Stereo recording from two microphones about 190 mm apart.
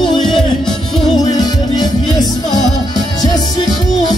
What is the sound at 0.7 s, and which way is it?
Music, 20° left (ahead or behind).